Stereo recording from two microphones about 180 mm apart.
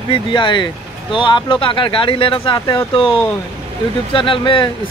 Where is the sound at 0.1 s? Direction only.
25° left (ahead or behind).